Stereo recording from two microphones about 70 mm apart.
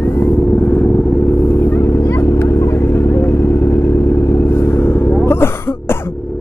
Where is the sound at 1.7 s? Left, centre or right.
Left.